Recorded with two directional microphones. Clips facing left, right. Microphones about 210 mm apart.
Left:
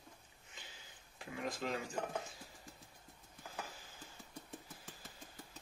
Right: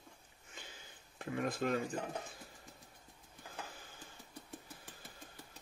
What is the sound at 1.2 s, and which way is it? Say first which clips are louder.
Speech: right 5 dB; 55° right (ahead or behind).